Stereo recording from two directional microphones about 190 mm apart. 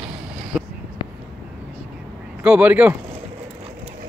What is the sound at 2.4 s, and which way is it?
Speech, 10° right (ahead or behind).